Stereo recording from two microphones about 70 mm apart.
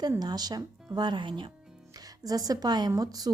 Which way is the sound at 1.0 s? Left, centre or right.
Right.